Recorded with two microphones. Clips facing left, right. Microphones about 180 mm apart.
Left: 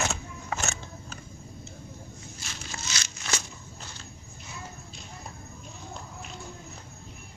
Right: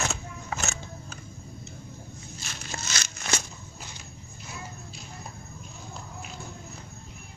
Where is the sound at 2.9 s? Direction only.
50° right (ahead or behind).